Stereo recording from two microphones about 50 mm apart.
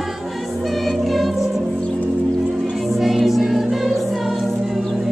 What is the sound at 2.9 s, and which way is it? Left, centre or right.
Music, centre.